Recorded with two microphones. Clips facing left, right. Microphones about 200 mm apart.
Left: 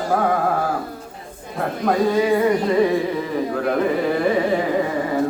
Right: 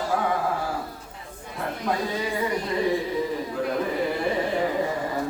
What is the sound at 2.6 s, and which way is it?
Music, 65° left (ahead or behind).